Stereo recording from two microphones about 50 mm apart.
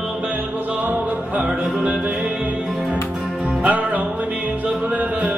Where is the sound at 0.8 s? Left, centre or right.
Right.